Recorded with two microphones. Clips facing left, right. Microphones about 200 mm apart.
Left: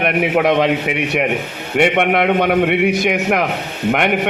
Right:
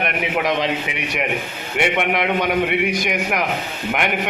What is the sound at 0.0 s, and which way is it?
A man's voice, 55° left (ahead or behind).